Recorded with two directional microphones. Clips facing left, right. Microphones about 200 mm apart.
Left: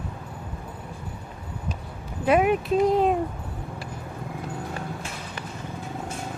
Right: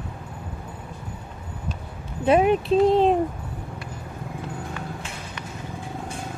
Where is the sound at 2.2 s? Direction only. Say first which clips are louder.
Right 2 dB; 25° right (ahead or behind).